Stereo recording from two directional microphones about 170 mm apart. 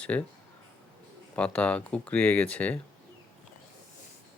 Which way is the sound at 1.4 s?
10° left (ahead or behind).